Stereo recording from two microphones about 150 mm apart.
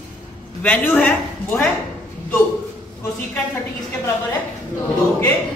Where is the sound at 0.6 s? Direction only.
10° left (ahead or behind).